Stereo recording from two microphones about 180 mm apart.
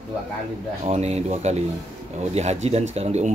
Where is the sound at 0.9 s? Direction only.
35° right (ahead or behind).